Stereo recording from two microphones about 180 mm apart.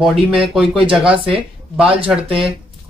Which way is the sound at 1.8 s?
30° right (ahead or behind).